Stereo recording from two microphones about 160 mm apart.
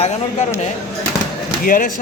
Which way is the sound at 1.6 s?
60° left (ahead or behind).